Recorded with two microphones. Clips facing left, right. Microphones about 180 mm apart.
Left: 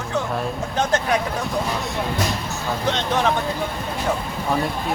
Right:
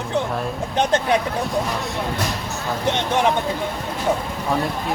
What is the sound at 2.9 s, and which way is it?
Speech, 15° right (ahead or behind).